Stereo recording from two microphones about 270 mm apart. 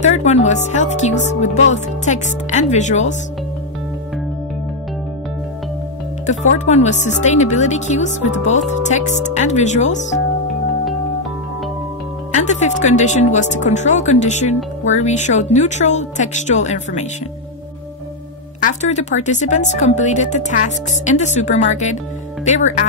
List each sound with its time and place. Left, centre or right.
0.0 s speech: left
6.2 s speech: left
12.4 s speech: left
18.6 s speech: left